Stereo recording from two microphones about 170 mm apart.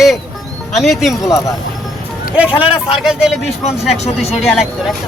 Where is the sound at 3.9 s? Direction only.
40° left (ahead or behind).